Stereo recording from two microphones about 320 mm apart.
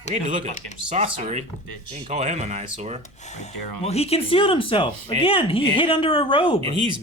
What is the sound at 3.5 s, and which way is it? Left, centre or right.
Speech, left.